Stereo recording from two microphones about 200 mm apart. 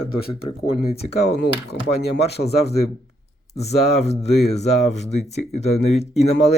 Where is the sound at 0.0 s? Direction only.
30° left (ahead or behind).